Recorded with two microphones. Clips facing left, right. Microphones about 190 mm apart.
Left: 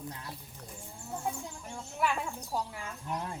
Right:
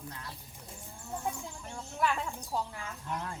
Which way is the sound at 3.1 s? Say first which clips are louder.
Left 1 dB; 20° left (ahead or behind).